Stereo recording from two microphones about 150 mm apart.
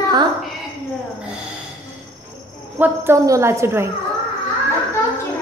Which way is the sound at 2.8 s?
15° right (ahead or behind).